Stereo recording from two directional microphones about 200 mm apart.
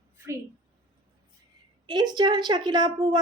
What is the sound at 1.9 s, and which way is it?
A woman's voice, 20° right (ahead or behind).